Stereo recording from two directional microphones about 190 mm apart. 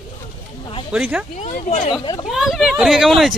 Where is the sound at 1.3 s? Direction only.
40° left (ahead or behind).